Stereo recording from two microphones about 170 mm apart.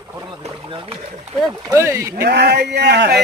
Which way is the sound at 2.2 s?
70° right (ahead or behind).